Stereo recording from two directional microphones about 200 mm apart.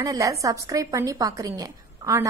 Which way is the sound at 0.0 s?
15° right (ahead or behind).